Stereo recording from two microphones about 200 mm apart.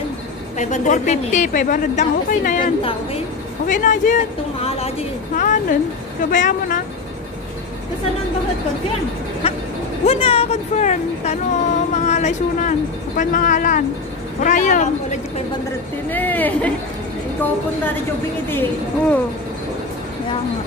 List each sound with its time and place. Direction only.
0.6 s a woman's voice: 35° left (ahead or behind)
2.8 s a woman's voice: 25° left (ahead or behind)
3.6 s a woman's voice: 40° left (ahead or behind)
10.0 s a woman's voice: 30° left (ahead or behind)
16.1 s speech: 10° left (ahead or behind)
18.5 s speech: 10° left (ahead or behind)